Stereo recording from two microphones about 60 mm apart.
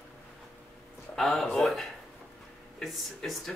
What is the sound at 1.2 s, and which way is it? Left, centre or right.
Speech, centre.